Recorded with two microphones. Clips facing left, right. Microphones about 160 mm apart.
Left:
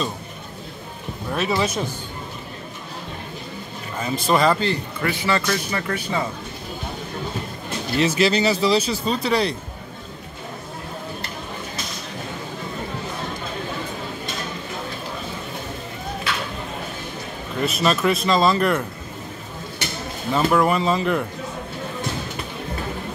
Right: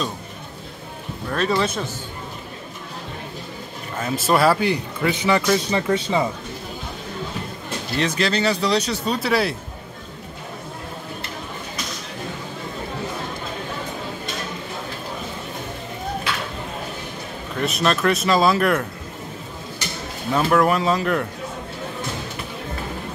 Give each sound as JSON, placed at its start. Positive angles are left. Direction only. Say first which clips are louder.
{"t": 1.3, "sound": "speech", "louder": "right 1 dB", "side_deg": 5}
{"t": 4.0, "sound": "a man's voice", "louder": "right 1 dB", "side_deg": 0}
{"t": 8.0, "sound": "speech", "louder": "left 3 dB", "side_deg": 5}
{"t": 17.6, "sound": "speech", "louder": "even", "side_deg": 0}
{"t": 20.3, "sound": "speech", "louder": "right 1 dB", "side_deg": 0}